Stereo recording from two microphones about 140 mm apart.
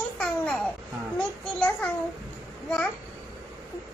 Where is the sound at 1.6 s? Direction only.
10° left (ahead or behind).